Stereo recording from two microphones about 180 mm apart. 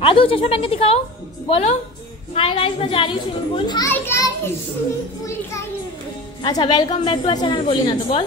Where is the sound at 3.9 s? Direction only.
15° left (ahead or behind); by 8.3 s 30° left (ahead or behind).